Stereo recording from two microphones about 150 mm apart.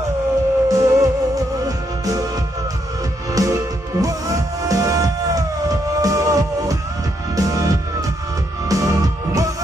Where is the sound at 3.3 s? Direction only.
25° right (ahead or behind).